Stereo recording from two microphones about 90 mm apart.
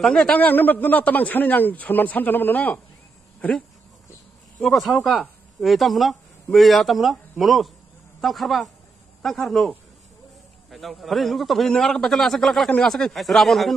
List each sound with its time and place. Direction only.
0.0 s a man's voice: 10° left (ahead or behind)
10.7 s speech: centre (ahead or behind)